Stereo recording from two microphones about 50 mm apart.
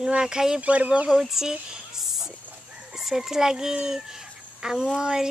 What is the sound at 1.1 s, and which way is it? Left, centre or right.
Speech, centre.